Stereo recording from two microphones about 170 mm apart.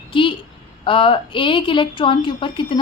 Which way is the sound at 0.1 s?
30° left (ahead or behind).